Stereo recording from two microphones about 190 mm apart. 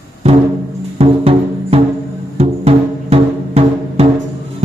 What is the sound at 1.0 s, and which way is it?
Music, 30° right (ahead or behind).